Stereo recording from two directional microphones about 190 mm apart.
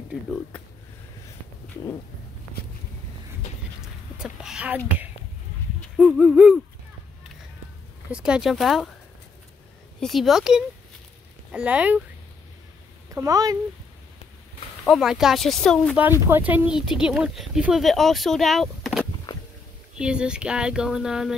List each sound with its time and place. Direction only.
3.8 s whispering: 5° right (ahead or behind)
5.9 s speech: 5° right (ahead or behind)
8.1 s speech: 5° right (ahead or behind)
9.9 s speech: centre (ahead or behind)
13.1 s speech: 15° right (ahead or behind)
14.9 s speech: centre (ahead or behind)
16.1 s speech: 10° right (ahead or behind)
19.3 s a sound: 20° left (ahead or behind)
20.0 s speech: 5° right (ahead or behind)